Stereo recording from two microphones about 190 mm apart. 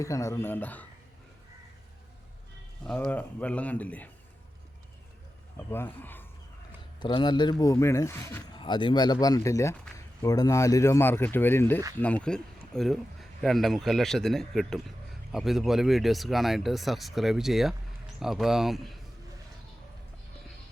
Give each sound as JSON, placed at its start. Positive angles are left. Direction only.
{"t": 0.0, "sound": "speech", "side_deg": 15}
{"t": 2.8, "sound": "speech", "side_deg": 5}
{"t": 5.5, "sound": "speech", "side_deg": 10}
{"t": 7.0, "sound": "speech", "side_deg": 25}
{"t": 8.5, "sound": "speech", "side_deg": 25}